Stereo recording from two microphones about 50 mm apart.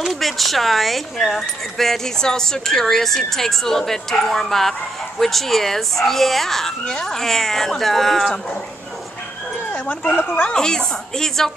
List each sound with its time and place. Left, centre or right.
0.0 s speech: centre
9.7 s speech: left
10.5 s speech: centre